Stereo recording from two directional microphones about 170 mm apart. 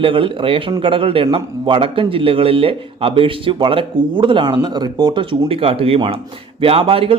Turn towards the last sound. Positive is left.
turn(degrees=-35)  # may be behind; listen again after turning